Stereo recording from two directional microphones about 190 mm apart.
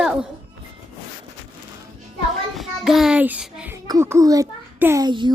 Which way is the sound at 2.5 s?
Centre (ahead or behind).